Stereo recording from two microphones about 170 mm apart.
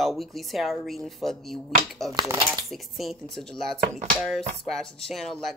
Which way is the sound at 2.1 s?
20° right (ahead or behind).